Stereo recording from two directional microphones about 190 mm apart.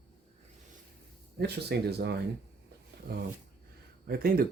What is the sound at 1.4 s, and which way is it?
Speech, 60° right (ahead or behind).